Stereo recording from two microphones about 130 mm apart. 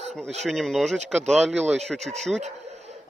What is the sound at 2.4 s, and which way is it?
Laughter, 60° right (ahead or behind).